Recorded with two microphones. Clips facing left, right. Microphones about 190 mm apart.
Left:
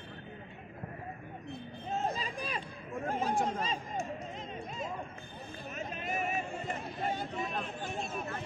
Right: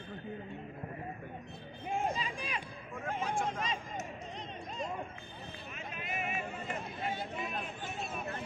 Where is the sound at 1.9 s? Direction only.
10° right (ahead or behind).